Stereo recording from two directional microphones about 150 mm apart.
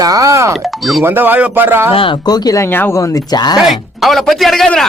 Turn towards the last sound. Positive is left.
turn(degrees=5)  # may be behind; listen again after turning